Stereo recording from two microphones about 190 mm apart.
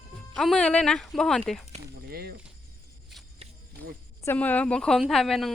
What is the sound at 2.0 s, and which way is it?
Speech, 55° right (ahead or behind).